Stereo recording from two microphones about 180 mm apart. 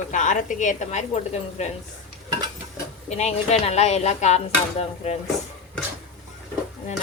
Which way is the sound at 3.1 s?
40° left (ahead or behind).